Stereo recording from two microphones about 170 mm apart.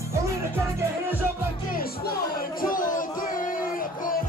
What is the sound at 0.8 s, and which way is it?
Music, 10° right (ahead or behind).